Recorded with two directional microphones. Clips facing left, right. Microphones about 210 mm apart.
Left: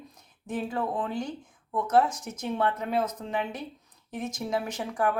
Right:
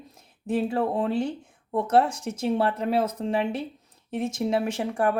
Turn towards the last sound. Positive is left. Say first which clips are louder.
# right 4 dB
turn(degrees=-30)  # may be behind; listen again after turning